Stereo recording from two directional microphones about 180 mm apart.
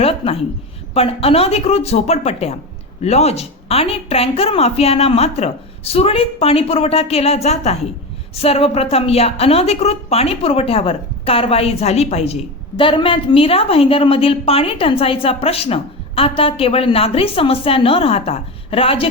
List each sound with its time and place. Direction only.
0.0 s a woman's voice: 35° left (ahead or behind)